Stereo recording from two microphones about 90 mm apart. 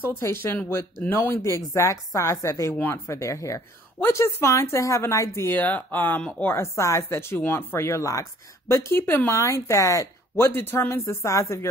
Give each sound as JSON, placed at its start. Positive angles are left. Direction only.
{"t": 0.0, "sound": "speech", "side_deg": 25}
{"t": 10.4, "sound": "speech", "side_deg": 25}